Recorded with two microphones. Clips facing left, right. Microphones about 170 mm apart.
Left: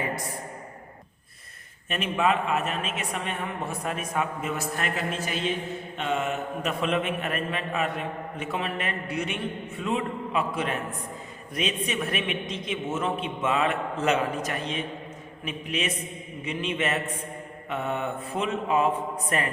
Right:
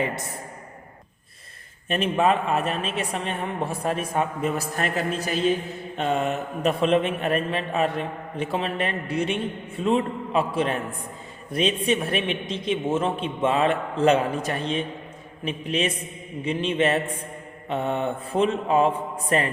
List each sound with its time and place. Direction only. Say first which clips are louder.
1.9 s a man's voice: right 4 dB; 35° right (ahead or behind)
17.7 s mantra: right 4 dB; 30° right (ahead or behind)